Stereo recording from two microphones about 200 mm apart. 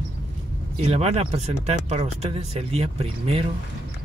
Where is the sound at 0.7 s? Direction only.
30° right (ahead or behind).